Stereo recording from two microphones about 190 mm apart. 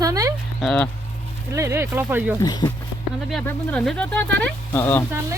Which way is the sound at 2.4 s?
20° left (ahead or behind).